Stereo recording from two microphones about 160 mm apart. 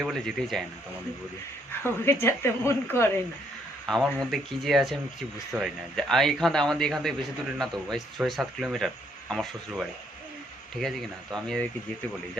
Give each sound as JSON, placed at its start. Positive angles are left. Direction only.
{"t": 0.0, "sound": "speech", "side_deg": 0}
{"t": 1.8, "sound": "speech", "side_deg": 15}
{"t": 3.8, "sound": "speech", "side_deg": 0}
{"t": 6.0, "sound": "speech", "side_deg": 0}